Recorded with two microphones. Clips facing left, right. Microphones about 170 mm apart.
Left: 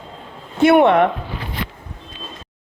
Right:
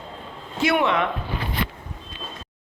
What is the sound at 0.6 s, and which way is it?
Speech, 55° left (ahead or behind).